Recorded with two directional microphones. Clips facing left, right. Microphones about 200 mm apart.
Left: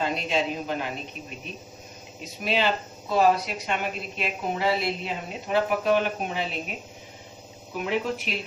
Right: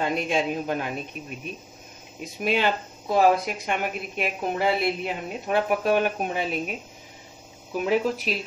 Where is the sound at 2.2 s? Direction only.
55° right (ahead or behind).